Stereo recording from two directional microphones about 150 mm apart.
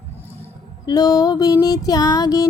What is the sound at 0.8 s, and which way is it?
Music, 25° left (ahead or behind).